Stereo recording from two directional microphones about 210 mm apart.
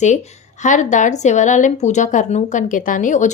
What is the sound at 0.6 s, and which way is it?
A woman's voice, 35° left (ahead or behind).